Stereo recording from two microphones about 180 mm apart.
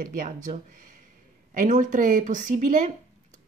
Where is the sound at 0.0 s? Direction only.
50° right (ahead or behind).